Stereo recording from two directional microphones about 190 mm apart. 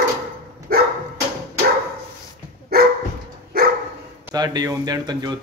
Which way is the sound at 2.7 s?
55° right (ahead or behind).